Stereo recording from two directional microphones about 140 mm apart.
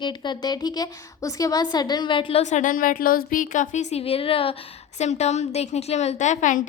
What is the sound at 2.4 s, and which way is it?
A woman's voice, 60° left (ahead or behind).